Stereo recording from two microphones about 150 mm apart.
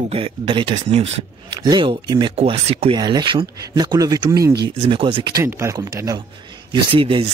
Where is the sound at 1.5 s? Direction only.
30° right (ahead or behind).